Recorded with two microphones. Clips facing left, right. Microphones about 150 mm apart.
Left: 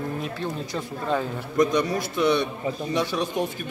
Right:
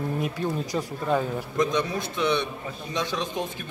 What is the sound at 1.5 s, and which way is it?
A man's voice, 10° left (ahead or behind).